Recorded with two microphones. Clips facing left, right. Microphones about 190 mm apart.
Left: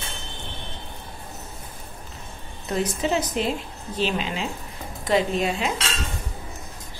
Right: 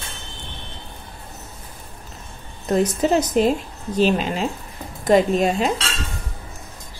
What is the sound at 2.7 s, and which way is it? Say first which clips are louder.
A woman's voice: right 6 dB; 40° right (ahead or behind).